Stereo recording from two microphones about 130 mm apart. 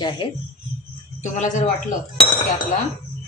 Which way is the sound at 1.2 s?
70° left (ahead or behind).